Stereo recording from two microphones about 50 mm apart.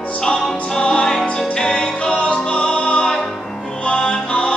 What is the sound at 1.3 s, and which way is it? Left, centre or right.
Music, centre.